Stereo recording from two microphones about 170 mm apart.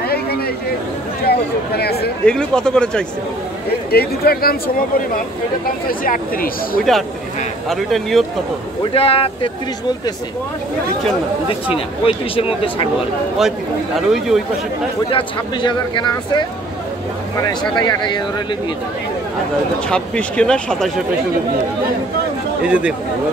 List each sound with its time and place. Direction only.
1.2 s speech: 70° left (ahead or behind)
2.2 s speech: 5° left (ahead or behind)
3.9 s speech: 65° left (ahead or behind)
6.8 s speech: centre (ahead or behind)
8.9 s speech: 35° left (ahead or behind)
11.4 s speech: 35° left (ahead or behind)
13.9 s speech: centre (ahead or behind)
15.0 s speech: 30° left (ahead or behind)
17.7 s speech: 25° left (ahead or behind)
19.9 s speech: 5° left (ahead or behind)
22.7 s speech: 5° right (ahead or behind)